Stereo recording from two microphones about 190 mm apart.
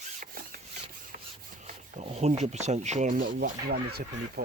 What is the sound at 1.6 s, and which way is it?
Speech, 35° right (ahead or behind).